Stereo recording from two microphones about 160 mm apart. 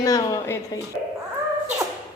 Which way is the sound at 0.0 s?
20° left (ahead or behind).